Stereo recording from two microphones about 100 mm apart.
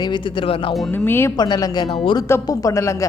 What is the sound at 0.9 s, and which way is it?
Speech, 20° left (ahead or behind).